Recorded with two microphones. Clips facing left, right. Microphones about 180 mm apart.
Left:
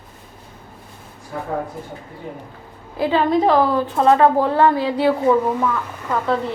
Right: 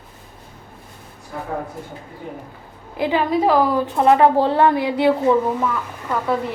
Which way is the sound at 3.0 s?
15° right (ahead or behind).